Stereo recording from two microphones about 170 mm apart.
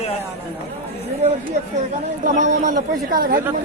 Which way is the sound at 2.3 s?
50° right (ahead or behind).